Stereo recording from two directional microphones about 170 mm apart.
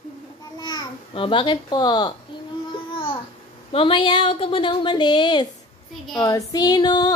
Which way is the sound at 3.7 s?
30° left (ahead or behind).